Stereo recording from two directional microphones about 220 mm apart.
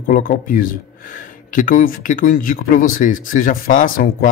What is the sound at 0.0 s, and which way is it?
Speech, 40° left (ahead or behind).